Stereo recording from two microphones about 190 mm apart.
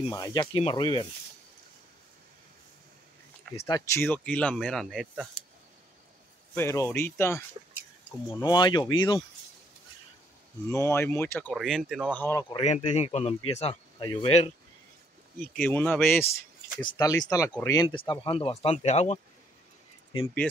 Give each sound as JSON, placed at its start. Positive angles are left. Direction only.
{"t": 0.1, "sound": "speech", "side_deg": 20}
{"t": 3.5, "sound": "speech", "side_deg": 20}
{"t": 6.5, "sound": "speech", "side_deg": 15}
{"t": 10.7, "sound": "speech", "side_deg": 15}
{"t": 11.5, "sound": "speech", "side_deg": 0}
{"t": 12.2, "sound": "speech", "side_deg": 15}
{"t": 12.5, "sound": "speech", "side_deg": 35}
{"t": 15.5, "sound": "speech", "side_deg": 10}
{"t": 16.8, "sound": "speech", "side_deg": 20}